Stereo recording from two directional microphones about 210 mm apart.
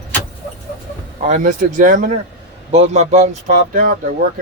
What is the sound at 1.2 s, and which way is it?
Speech, 40° right (ahead or behind).